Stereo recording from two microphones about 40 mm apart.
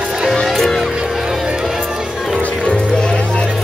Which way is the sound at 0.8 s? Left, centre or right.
Centre.